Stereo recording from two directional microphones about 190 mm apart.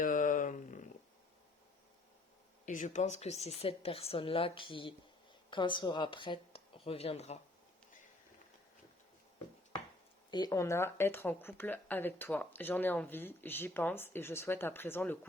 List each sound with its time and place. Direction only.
0.0 s a sound: 45° left (ahead or behind)
2.6 s a woman's voice: 40° left (ahead or behind)
10.3 s speech: 20° left (ahead or behind)